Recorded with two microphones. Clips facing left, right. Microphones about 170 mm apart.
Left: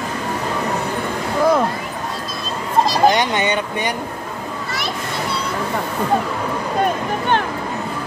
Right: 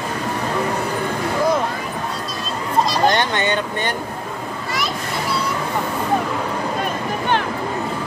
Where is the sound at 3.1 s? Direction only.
15° left (ahead or behind).